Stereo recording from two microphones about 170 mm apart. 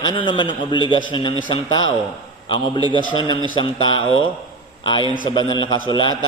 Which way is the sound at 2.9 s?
30° left (ahead or behind).